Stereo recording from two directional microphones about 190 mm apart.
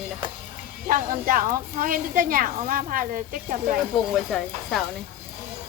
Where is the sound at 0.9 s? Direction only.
45° right (ahead or behind).